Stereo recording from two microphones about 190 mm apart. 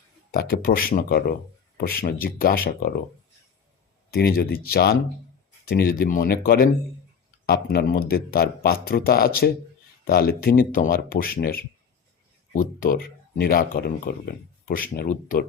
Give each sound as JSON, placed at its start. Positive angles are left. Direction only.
{"t": 0.3, "sound": "speech", "side_deg": 50}
{"t": 4.1, "sound": "speech", "side_deg": 55}